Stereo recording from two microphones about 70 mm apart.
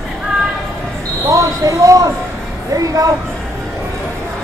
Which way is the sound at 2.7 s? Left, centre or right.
Right.